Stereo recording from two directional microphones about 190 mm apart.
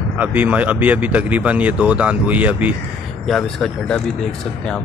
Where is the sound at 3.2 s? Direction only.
Centre (ahead or behind).